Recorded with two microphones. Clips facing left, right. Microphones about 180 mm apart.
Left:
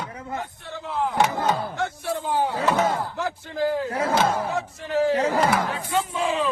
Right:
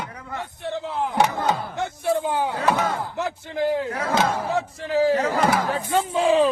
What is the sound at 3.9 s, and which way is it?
Battle cry, 25° left (ahead or behind).